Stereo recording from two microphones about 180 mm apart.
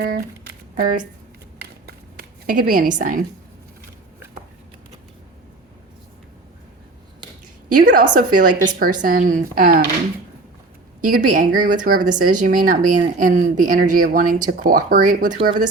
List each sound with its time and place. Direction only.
0.0 s speech: 55° right (ahead or behind)
1.9 s a sound: 55° right (ahead or behind)
7.7 s speech: 50° right (ahead or behind)
11.1 s speech: 50° right (ahead or behind)
15.4 s speech: 25° right (ahead or behind)